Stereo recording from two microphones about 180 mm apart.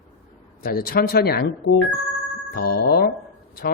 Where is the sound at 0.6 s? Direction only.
55° left (ahead or behind).